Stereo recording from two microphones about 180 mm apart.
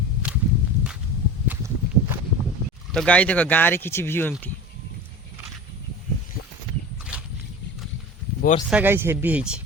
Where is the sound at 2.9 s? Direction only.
5° left (ahead or behind).